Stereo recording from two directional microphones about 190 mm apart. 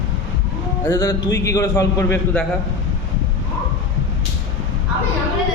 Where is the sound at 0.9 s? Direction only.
15° left (ahead or behind).